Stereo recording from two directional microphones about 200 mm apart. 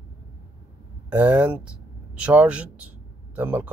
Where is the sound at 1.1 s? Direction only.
10° right (ahead or behind).